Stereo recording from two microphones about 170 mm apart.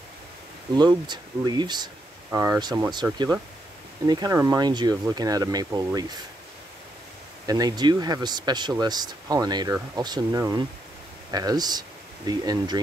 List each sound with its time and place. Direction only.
0.7 s speech: 25° right (ahead or behind)
7.4 s speech: 20° right (ahead or behind)